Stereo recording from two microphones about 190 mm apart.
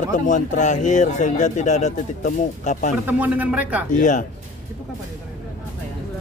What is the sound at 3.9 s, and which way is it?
Speech, 40° left (ahead or behind).